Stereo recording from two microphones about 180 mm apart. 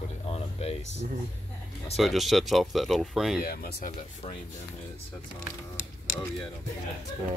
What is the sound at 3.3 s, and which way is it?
Speech, 60° left (ahead or behind).